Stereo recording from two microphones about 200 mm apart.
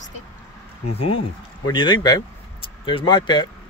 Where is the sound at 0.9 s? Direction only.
30° left (ahead or behind).